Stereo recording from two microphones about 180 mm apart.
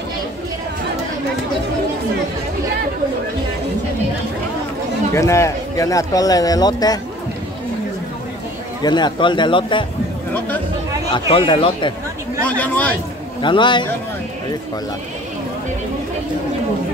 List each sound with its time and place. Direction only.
5.1 s speech: 15° left (ahead or behind)
8.8 s speech: 25° left (ahead or behind)
11.1 s speech: 30° left (ahead or behind)
12.4 s speech: 10° left (ahead or behind)
13.4 s speech: 25° left (ahead or behind)